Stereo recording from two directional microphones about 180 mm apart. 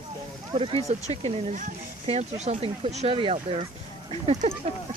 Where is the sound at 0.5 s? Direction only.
35° right (ahead or behind).